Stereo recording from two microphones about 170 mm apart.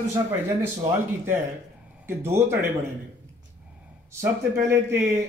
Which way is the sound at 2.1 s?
15° right (ahead or behind).